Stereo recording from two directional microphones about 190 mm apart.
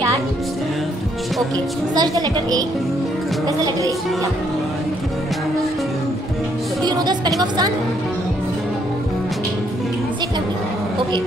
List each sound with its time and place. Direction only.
2.0 s speech: 20° right (ahead or behind)
6.8 s speech: 20° right (ahead or behind)